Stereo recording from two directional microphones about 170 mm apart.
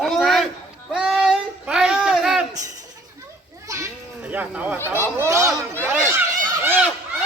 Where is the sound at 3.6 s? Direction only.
15° right (ahead or behind).